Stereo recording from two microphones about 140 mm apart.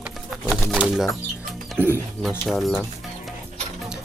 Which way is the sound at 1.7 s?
15° right (ahead or behind).